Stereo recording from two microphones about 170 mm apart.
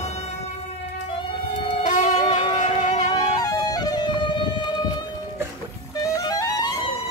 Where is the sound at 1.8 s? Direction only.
50° left (ahead or behind).